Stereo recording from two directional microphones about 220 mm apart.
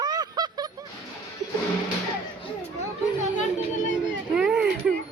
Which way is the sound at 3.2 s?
35° left (ahead or behind).